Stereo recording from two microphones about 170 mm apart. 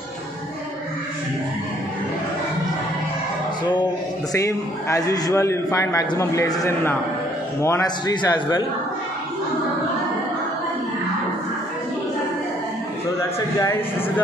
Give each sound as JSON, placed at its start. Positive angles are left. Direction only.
{"t": 4.3, "sound": "a man's voice", "side_deg": 20}
{"t": 13.6, "sound": "speech", "side_deg": 15}